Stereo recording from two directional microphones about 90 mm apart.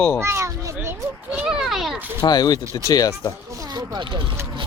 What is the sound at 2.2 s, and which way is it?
Speech, 50° left (ahead or behind).